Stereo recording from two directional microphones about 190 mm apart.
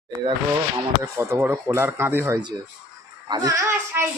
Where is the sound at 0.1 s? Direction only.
15° right (ahead or behind).